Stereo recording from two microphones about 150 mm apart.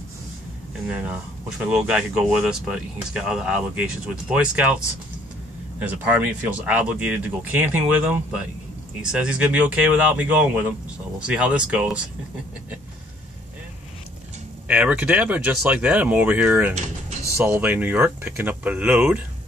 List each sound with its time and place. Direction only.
0.8 s speech: 10° right (ahead or behind)
5.8 s speech: 10° right (ahead or behind)
14.7 s speech: 10° right (ahead or behind)